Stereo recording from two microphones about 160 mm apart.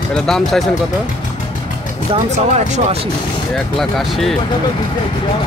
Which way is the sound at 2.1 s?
45° right (ahead or behind).